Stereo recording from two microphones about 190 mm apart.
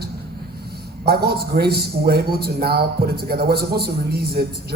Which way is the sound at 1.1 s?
55° right (ahead or behind).